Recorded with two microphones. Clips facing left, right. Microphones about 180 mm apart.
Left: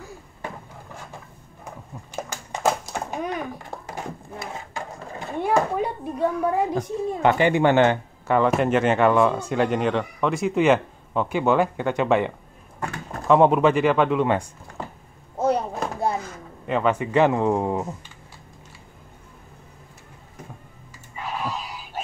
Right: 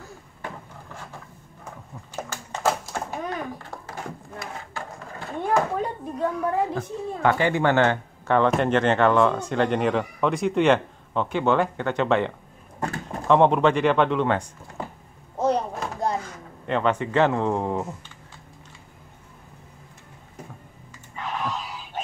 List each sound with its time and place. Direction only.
2.2 s a sound: 15° left (ahead or behind)
5.4 s a child's voice: 10° left (ahead or behind)
8.4 s speech: 5° left (ahead or behind)
13.3 s speech: 5° left (ahead or behind)
15.3 s chopping: 10° left (ahead or behind)
21.2 s a sound: 10° left (ahead or behind)